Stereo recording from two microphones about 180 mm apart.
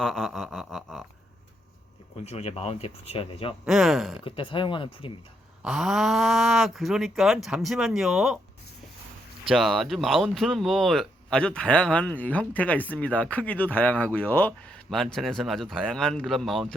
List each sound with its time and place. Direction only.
0.0 s a sound: centre (ahead or behind)
2.2 s speech: 35° left (ahead or behind)
3.7 s speech: centre (ahead or behind)
4.2 s speech: 30° left (ahead or behind)
5.6 s speech: 5° right (ahead or behind)
9.5 s speech: centre (ahead or behind)